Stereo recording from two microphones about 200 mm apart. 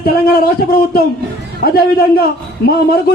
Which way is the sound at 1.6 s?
50° left (ahead or behind).